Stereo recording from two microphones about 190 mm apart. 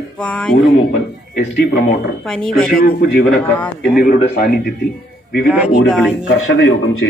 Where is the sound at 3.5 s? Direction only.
5° left (ahead or behind).